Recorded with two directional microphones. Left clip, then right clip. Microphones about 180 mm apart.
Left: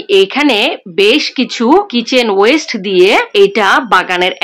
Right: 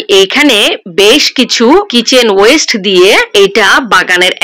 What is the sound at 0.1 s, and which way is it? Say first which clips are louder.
Speech: right 4 dB; 20° right (ahead or behind).